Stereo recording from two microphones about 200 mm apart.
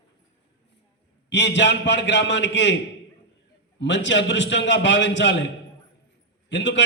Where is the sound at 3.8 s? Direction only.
65° left (ahead or behind).